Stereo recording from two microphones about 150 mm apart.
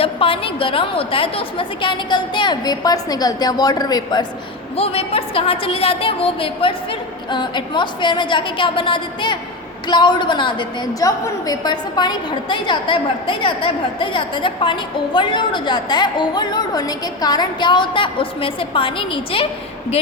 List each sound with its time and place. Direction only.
0.0 s a woman's voice: 35° left (ahead or behind)
4.8 s a woman's voice: 40° left (ahead or behind)